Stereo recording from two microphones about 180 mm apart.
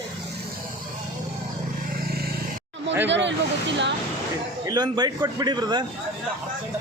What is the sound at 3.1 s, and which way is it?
Speech, 80° right.